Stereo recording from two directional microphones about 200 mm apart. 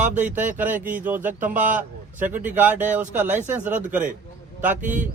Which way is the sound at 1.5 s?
40° right (ahead or behind).